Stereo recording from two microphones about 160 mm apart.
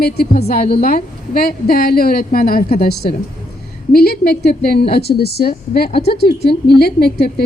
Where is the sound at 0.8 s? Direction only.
65° left (ahead or behind).